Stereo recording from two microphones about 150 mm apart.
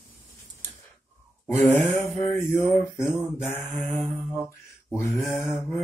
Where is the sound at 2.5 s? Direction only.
15° left (ahead or behind).